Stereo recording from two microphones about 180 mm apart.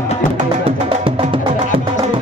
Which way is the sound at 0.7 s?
30° right (ahead or behind).